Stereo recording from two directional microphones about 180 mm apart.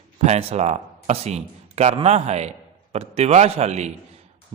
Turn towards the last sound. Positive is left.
turn(degrees=-40)  # may be behind; listen again after turning